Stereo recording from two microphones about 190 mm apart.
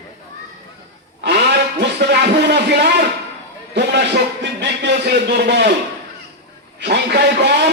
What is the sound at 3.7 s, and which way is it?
A man's voice, 65° right (ahead or behind).